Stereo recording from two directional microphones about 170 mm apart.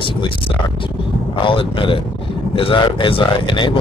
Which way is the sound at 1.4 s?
30° left (ahead or behind).